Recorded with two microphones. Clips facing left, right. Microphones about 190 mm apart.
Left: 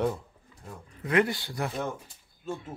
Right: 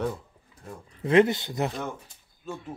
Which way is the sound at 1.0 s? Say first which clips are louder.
Right 6 dB; 25° right (ahead or behind).